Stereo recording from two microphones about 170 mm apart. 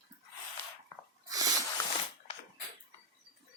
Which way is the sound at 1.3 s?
20° right (ahead or behind).